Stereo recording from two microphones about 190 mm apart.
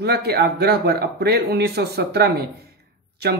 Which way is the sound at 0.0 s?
60° right (ahead or behind).